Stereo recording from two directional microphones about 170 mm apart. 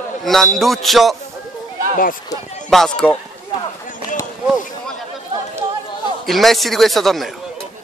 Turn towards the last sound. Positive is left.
turn(degrees=0)  # may be behind; listen again after turning